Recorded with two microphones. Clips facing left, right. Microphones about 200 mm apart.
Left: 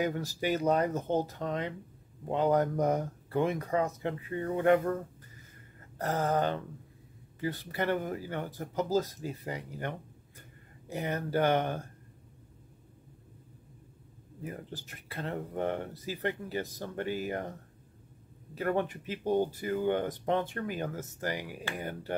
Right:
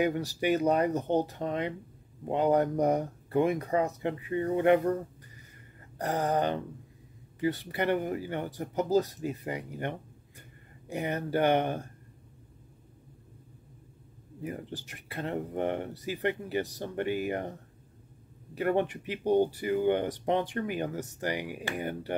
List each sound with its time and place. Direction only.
0.0 s speech: 15° right (ahead or behind)
5.9 s speech: 15° right (ahead or behind)
14.4 s speech: 15° right (ahead or behind)
18.6 s speech: 15° right (ahead or behind)